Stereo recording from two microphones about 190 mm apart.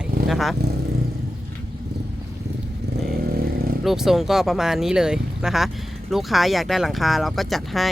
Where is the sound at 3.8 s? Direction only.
Centre (ahead or behind).